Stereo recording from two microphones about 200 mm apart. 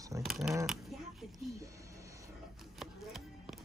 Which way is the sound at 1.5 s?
15° right (ahead or behind).